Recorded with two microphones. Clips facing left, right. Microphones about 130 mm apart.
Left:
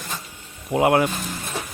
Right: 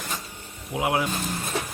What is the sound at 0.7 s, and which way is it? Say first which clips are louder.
Speech: left 7 dB; 60° left (ahead or behind).